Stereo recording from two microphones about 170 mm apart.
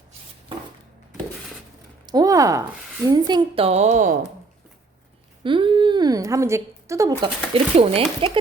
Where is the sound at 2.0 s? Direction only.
20° right (ahead or behind).